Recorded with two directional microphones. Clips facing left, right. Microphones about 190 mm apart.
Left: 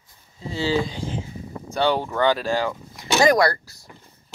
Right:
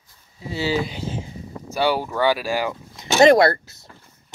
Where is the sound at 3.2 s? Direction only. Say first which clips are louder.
Right 5 dB; 25° right (ahead or behind).